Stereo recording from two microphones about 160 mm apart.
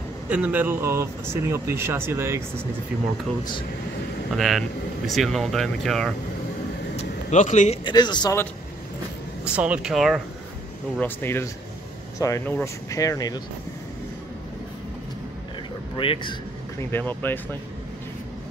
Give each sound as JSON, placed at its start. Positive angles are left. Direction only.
{"t": 0.3, "sound": "speech", "side_deg": -10}
{"t": 4.4, "sound": "speech", "side_deg": 0}
{"t": 7.0, "sound": "a sound", "side_deg": 45}
{"t": 7.8, "sound": "speech", "side_deg": 25}
{"t": 9.4, "sound": "speech", "side_deg": -5}
{"t": 11.0, "sound": "speech", "side_deg": 15}
{"t": 16.0, "sound": "a man's voice", "side_deg": 30}
{"t": 16.7, "sound": "speech", "side_deg": 15}